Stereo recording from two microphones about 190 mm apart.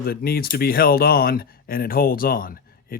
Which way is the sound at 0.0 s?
55° left (ahead or behind).